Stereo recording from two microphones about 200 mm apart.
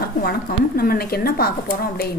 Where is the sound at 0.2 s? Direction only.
50° left (ahead or behind).